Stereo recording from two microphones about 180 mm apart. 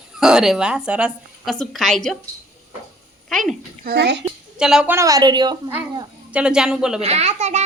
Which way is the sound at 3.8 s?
70° right (ahead or behind).